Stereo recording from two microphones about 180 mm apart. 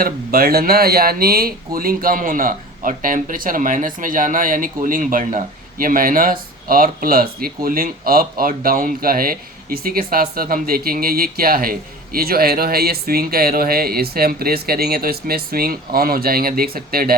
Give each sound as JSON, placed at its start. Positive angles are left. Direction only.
{"t": 0.0, "sound": "speech", "side_deg": -55}